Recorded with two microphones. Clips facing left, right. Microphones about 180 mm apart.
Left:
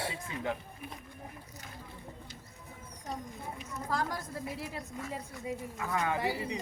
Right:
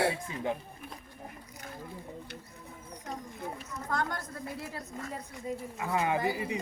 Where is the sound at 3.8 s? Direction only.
5° left (ahead or behind).